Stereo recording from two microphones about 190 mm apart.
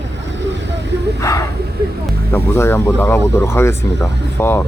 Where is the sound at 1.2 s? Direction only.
15° left (ahead or behind).